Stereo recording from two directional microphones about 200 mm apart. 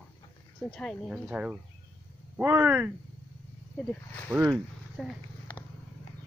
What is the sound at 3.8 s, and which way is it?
Speech, 5° left (ahead or behind).